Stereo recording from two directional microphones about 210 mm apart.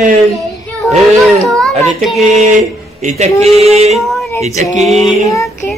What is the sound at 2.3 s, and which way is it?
A man's voice, 35° right (ahead or behind).